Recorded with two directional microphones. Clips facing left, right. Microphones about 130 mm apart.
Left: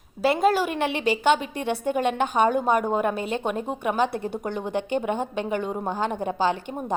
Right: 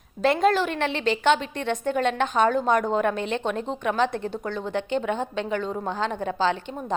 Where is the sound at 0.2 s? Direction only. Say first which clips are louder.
Even; 5° left (ahead or behind).